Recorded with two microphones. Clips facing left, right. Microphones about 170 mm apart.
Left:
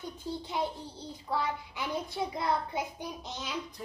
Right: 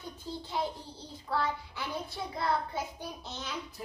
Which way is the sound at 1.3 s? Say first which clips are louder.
Even; 15° left (ahead or behind).